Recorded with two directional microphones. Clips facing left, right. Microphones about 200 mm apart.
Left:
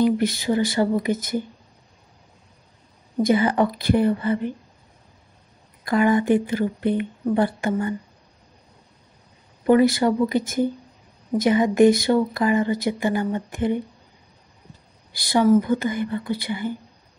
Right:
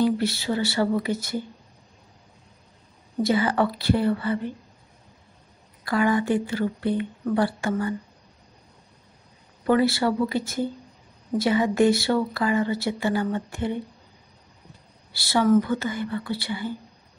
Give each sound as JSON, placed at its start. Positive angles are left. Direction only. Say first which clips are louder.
{"t": 0.0, "sound": "speech", "louder": "left 3 dB", "side_deg": 15}
{"t": 3.3, "sound": "speech", "louder": "left 3 dB", "side_deg": 20}
{"t": 5.9, "sound": "speech", "louder": "left 4 dB", "side_deg": 20}
{"t": 9.7, "sound": "speech", "louder": "left 4 dB", "side_deg": 15}
{"t": 15.1, "sound": "speech", "louder": "left 2 dB", "side_deg": 15}